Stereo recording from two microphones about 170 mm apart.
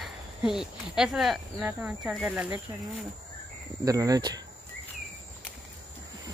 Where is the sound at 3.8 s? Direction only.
20° right (ahead or behind).